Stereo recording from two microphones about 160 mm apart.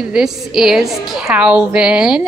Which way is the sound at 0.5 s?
5° right (ahead or behind).